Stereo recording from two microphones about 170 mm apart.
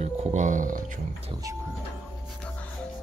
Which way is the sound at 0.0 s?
40° right (ahead or behind).